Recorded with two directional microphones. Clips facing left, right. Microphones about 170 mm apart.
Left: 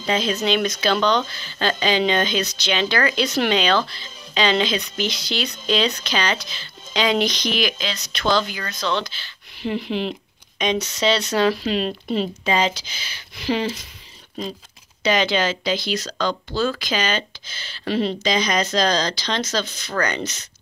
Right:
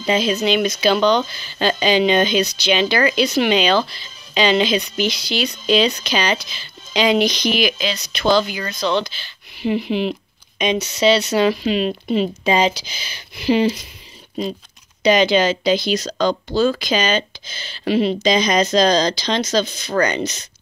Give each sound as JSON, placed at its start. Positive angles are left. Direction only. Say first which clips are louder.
{"t": 0.0, "sound": "speech", "louder": "right 4 dB", "side_deg": -10}
{"t": 12.4, "sound": "speech", "louder": "right 4 dB", "side_deg": -15}
{"t": 15.0, "sound": "speech", "louder": "right 5 dB", "side_deg": -15}